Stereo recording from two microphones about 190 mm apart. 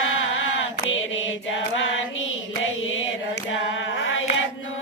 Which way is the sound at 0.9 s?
85° left.